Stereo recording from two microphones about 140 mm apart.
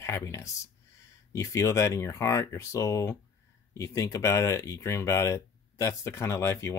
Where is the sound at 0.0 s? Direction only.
20° left (ahead or behind).